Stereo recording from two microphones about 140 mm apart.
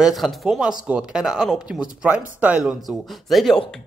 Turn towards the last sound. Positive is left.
turn(degrees=0)  # may be behind; listen again after turning